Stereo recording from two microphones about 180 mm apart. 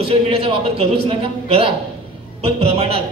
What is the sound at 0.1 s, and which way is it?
Speech, 35° right (ahead or behind).